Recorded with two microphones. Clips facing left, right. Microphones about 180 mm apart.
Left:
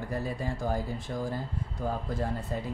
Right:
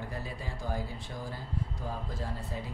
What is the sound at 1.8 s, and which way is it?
Speech, 50° left (ahead or behind).